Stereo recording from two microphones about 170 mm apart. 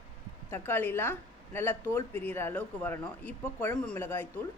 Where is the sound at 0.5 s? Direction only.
10° left (ahead or behind).